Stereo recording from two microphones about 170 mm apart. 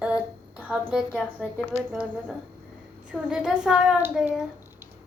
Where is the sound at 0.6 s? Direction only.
5° right (ahead or behind).